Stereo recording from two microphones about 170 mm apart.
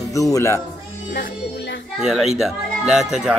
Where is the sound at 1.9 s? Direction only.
Centre (ahead or behind).